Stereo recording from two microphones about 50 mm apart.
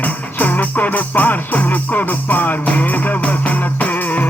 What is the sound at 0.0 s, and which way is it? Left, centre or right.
Music, left.